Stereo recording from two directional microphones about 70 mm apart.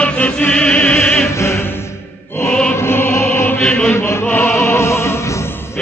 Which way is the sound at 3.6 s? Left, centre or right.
Centre.